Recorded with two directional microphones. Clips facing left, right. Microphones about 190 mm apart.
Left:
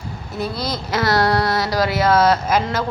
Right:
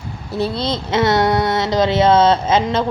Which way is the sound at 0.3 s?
30° right (ahead or behind).